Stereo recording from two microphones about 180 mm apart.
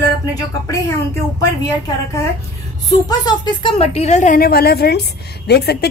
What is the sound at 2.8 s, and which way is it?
A woman's voice, 20° left (ahead or behind).